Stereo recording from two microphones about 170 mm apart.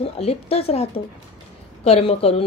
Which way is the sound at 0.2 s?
35° left (ahead or behind).